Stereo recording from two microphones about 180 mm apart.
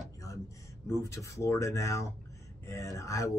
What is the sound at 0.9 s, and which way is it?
Speech, 15° left (ahead or behind).